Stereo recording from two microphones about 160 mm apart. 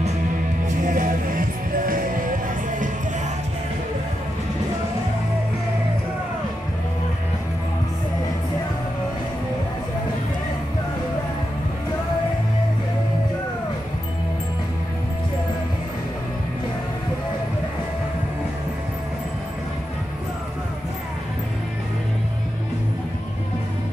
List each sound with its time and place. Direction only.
0.8 s music: 55° right (ahead or behind)